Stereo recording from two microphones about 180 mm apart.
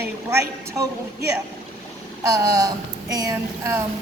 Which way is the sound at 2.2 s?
20° right (ahead or behind).